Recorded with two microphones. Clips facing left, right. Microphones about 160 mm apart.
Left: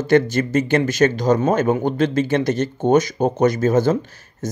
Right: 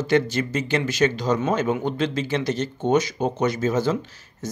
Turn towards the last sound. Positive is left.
turn(degrees=50)  # may be behind; listen again after turning